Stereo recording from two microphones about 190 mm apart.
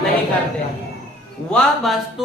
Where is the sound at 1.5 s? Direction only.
5° left (ahead or behind).